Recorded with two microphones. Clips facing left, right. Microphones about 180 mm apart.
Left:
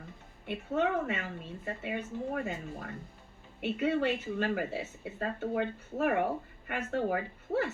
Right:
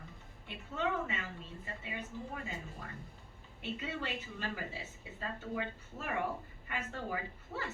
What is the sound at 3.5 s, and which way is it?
A woman's voice, 60° left (ahead or behind).